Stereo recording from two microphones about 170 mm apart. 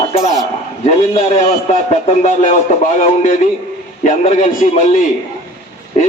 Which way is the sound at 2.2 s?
40° left (ahead or behind).